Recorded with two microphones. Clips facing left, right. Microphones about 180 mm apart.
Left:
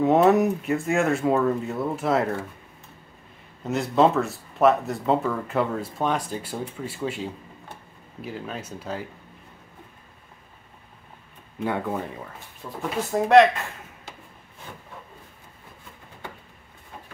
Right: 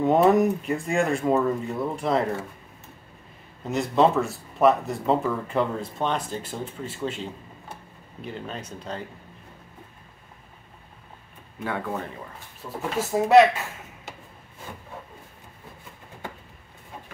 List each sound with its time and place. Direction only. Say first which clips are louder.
0.0 s speech: left 1 dB; centre (ahead or behind)
3.6 s speech: left 1 dB; centre (ahead or behind)
11.6 s speech: left 3 dB; 15° left (ahead or behind)
12.6 s speech: even; 5° right (ahead or behind)